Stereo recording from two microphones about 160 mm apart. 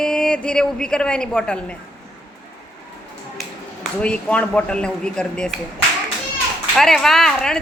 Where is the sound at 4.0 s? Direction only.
5° left (ahead or behind).